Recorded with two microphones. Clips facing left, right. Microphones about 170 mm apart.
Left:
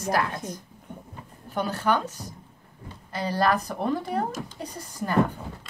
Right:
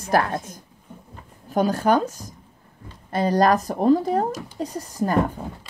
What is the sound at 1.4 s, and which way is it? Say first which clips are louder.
Speech: right 6 dB; 45° right (ahead or behind).